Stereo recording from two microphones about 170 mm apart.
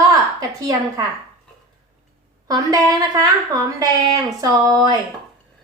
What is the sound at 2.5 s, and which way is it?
A woman's voice, 20° right (ahead or behind).